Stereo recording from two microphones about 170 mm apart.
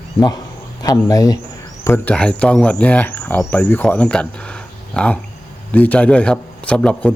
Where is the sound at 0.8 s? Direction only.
20° left (ahead or behind).